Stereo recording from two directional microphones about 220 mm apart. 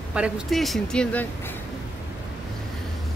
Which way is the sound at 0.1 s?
Centre (ahead or behind).